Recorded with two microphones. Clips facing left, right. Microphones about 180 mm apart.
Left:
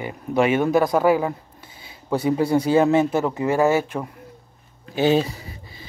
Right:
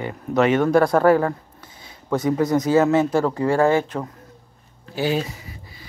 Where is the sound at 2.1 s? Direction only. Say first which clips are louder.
Even; 30° left (ahead or behind); by 4.1 s 10° left (ahead or behind).